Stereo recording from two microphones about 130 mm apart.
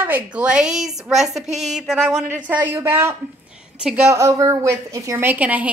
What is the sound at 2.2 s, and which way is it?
Speech, 15° right (ahead or behind).